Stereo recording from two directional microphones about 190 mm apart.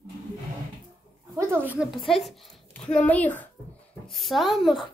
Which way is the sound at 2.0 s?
Centre (ahead or behind).